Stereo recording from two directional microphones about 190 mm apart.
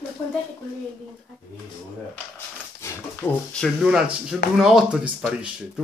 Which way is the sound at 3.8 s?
5° right (ahead or behind).